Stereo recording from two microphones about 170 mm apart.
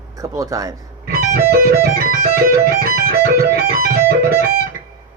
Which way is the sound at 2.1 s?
55° right (ahead or behind).